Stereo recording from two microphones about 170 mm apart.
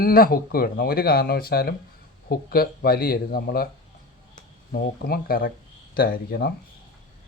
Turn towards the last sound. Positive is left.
turn(degrees=60)  # may be behind; listen again after turning